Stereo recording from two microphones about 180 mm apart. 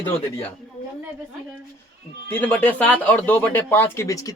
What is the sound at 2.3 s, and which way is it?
Speech, 10° left (ahead or behind).